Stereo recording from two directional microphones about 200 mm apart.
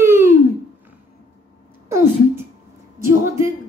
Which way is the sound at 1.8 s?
15° right (ahead or behind).